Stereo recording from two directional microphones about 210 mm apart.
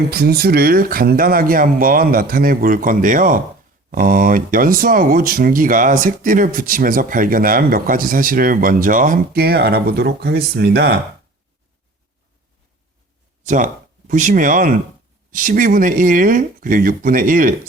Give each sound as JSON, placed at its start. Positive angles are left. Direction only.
{"t": 0.1, "sound": "speech", "side_deg": -45}
{"t": 13.4, "sound": "speech", "side_deg": -40}